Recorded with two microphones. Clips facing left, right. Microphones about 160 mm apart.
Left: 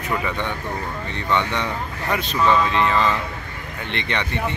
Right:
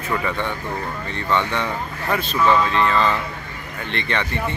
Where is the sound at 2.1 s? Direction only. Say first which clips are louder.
Right 1 dB; 15° left (ahead or behind).